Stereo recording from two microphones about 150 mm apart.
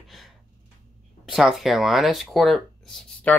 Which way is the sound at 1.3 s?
Centre (ahead or behind).